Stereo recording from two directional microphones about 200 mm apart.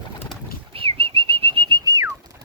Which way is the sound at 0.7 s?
25° right (ahead or behind).